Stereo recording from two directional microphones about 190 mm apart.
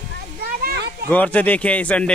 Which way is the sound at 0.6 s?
55° right (ahead or behind).